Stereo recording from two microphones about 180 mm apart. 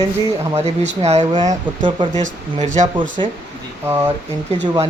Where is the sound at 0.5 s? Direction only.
35° right (ahead or behind).